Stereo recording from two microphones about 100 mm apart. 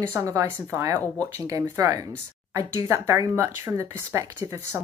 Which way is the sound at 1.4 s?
40° right (ahead or behind).